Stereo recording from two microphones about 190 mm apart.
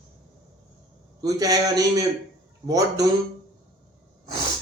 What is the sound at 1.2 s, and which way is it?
A man's voice, 20° right (ahead or behind).